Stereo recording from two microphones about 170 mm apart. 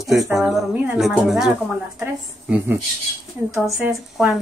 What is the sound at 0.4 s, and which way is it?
A woman's voice, centre (ahead or behind).